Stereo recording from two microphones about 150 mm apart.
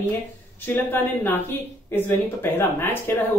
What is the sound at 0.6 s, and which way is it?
Speech, 15° left (ahead or behind).